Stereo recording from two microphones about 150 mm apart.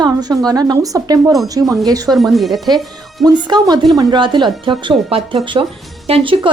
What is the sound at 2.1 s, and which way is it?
Speech, centre (ahead or behind).